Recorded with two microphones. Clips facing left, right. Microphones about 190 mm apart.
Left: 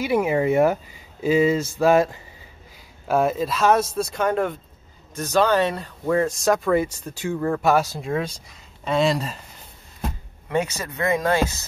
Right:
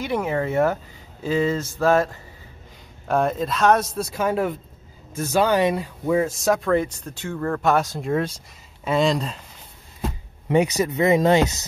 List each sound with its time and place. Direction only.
0.0 s a sound: 10° left (ahead or behind)
3.1 s speech: 5° left (ahead or behind)
10.5 s speech: 15° right (ahead or behind)